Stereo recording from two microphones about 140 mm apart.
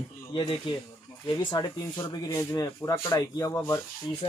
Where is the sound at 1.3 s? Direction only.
25° left (ahead or behind).